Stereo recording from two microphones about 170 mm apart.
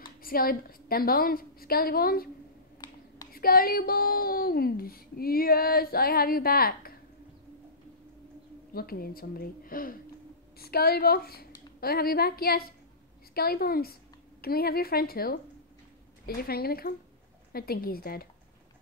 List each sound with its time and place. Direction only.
0.2 s speech: 60° left (ahead or behind)
2.8 s a sound: 25° left (ahead or behind)
3.3 s speech: 60° left (ahead or behind)
8.7 s speech: 60° left (ahead or behind)
16.3 s speech: 65° left (ahead or behind)